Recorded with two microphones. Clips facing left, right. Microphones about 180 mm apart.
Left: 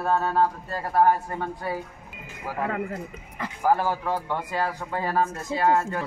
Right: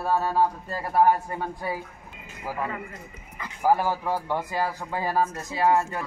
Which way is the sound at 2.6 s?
65° left (ahead or behind).